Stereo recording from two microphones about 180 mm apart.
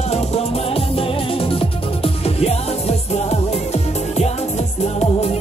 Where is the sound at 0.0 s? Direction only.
35° left (ahead or behind).